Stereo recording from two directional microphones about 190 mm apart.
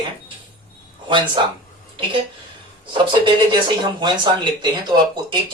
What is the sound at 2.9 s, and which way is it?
Speech, 25° right (ahead or behind).